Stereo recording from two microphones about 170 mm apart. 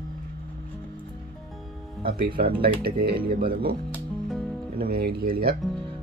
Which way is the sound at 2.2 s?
65° right (ahead or behind).